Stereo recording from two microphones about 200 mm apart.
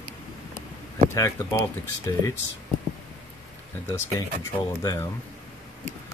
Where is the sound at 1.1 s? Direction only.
15° left (ahead or behind).